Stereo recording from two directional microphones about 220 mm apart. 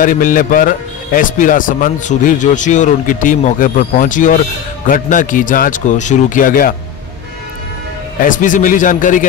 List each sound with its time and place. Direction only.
0.0 s a man's voice: 35° left (ahead or behind)
8.2 s a man's voice: 35° left (ahead or behind)